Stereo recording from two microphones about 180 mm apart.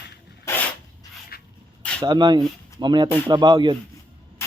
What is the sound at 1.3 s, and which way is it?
Rub, 55° left (ahead or behind).